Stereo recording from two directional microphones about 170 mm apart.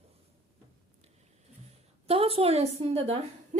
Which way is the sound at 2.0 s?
35° right (ahead or behind).